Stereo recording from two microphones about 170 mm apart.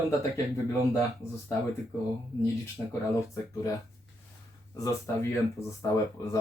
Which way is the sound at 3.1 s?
15° left (ahead or behind).